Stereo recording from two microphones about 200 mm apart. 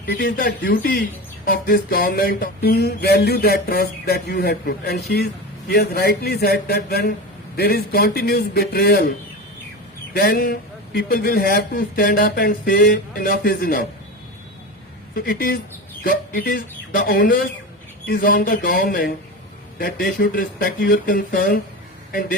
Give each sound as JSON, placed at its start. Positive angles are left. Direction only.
{"t": 0.0, "sound": "music", "side_deg": 50}
{"t": 10.2, "sound": "music", "side_deg": 50}
{"t": 15.1, "sound": "speech", "side_deg": 45}
{"t": 16.0, "sound": "music", "side_deg": 45}